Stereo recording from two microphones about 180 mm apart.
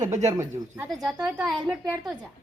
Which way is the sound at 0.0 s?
40° right (ahead or behind).